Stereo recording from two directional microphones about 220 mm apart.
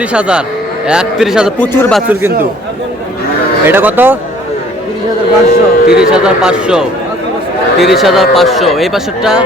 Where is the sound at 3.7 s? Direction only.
10° right (ahead or behind).